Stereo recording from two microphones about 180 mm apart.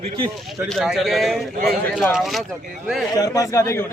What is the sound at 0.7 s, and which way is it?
Speech, 5° right (ahead or behind).